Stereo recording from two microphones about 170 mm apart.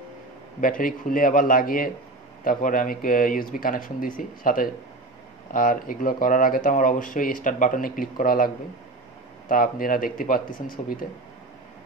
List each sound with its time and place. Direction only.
0.6 s speech: 55° left (ahead or behind)
9.5 s speech: 55° left (ahead or behind)